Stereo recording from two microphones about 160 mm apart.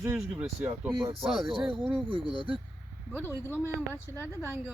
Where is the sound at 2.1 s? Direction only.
35° right (ahead or behind).